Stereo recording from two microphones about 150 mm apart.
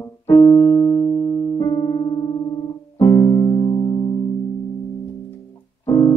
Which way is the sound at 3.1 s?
30° left (ahead or behind).